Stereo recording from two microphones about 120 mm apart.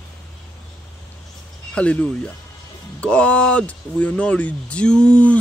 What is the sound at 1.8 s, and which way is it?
A man's voice, 10° left (ahead or behind).